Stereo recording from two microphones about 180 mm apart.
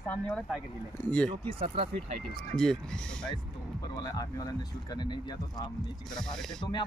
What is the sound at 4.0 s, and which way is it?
Speech, 20° left (ahead or behind).